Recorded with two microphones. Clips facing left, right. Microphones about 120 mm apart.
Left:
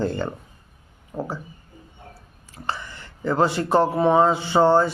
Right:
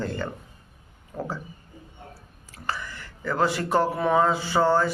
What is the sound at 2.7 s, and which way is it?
Speech, 25° left (ahead or behind).